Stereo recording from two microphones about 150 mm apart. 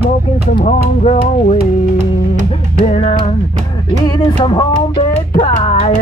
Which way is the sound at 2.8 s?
45° left (ahead or behind).